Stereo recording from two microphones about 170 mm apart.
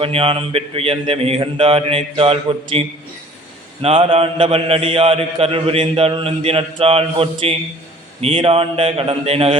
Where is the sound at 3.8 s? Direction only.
30° right (ahead or behind).